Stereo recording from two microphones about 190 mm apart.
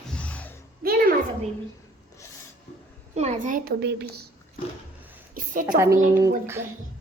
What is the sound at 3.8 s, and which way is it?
Speech, 60° right (ahead or behind).